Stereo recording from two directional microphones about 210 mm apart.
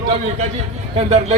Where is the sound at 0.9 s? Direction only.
30° right (ahead or behind).